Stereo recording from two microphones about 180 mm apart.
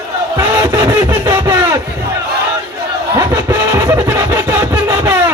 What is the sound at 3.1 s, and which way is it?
Music, 15° right (ahead or behind).